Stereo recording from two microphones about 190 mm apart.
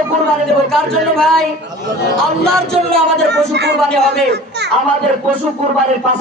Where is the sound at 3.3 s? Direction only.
60° right (ahead or behind).